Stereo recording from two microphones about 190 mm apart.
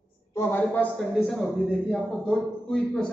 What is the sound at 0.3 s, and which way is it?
A man's voice, 15° left (ahead or behind).